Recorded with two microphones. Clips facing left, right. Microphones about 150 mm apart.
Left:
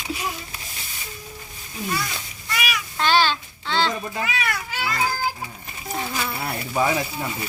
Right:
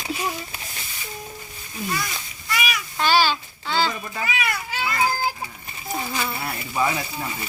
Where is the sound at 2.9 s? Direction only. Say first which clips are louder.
Even; 5° right (ahead or behind).